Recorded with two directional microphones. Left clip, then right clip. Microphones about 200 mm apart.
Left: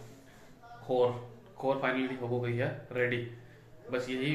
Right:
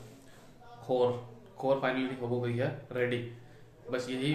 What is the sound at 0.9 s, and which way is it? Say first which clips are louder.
Speech: even; 15° right (ahead or behind).